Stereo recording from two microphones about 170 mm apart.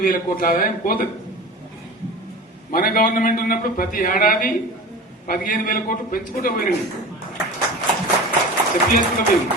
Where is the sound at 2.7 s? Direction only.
60° left (ahead or behind).